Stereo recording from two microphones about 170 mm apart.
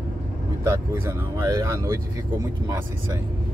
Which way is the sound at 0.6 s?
15° right (ahead or behind).